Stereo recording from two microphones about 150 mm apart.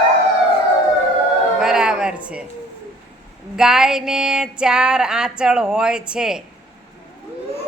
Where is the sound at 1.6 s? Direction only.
5° right (ahead or behind).